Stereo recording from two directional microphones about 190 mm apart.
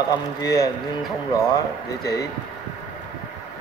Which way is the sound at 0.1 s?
20° left (ahead or behind).